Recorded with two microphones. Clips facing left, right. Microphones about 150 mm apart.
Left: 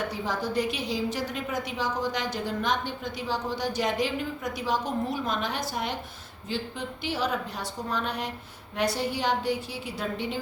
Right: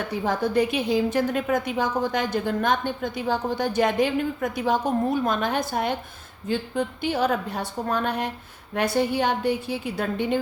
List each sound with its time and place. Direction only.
0.1 s a woman's voice: 55° right (ahead or behind)